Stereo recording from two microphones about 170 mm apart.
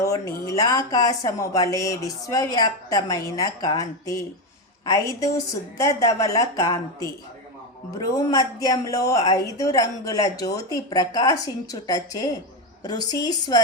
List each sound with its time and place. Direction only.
0.0 s speech: 20° left (ahead or behind)
5.7 s speech: 20° left (ahead or behind)